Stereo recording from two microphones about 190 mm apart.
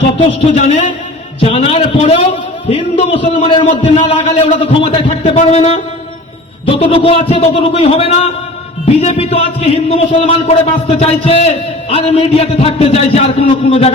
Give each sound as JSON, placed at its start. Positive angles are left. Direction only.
{"t": 0.5, "sound": "a man's voice", "side_deg": 35}